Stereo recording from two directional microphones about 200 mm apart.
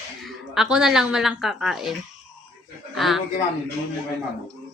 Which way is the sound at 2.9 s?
Centre (ahead or behind).